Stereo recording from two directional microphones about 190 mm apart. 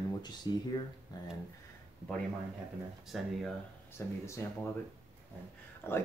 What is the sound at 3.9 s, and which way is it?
Speech, 15° left (ahead or behind).